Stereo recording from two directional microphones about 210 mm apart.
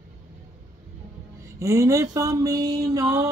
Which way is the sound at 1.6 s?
15° right (ahead or behind).